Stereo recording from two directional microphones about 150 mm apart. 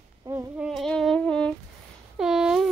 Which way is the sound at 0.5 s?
Centre (ahead or behind).